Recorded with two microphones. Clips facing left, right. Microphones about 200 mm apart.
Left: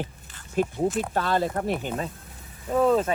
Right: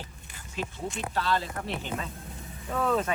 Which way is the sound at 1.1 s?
50° left (ahead or behind).